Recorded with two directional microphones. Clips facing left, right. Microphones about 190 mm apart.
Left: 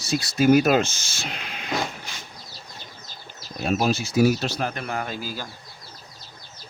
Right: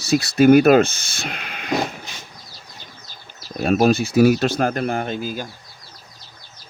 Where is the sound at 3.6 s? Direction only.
55° right (ahead or behind).